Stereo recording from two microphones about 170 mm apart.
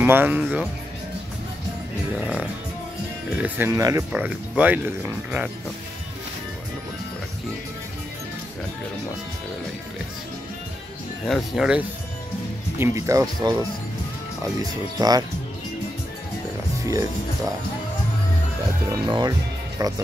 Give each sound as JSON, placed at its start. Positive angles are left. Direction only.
{"t": 0.0, "sound": "speech", "side_deg": -10}
{"t": 2.1, "sound": "speech", "side_deg": -5}
{"t": 11.2, "sound": "speech", "side_deg": 0}
{"t": 12.7, "sound": "speech", "side_deg": -15}
{"t": 19.0, "sound": "speech", "side_deg": -25}